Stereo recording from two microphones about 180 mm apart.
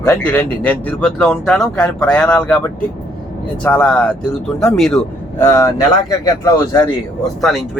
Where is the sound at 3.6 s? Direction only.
5° left (ahead or behind).